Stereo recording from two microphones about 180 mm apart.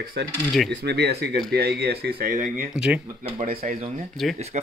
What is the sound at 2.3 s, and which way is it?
Speech, 45° right (ahead or behind).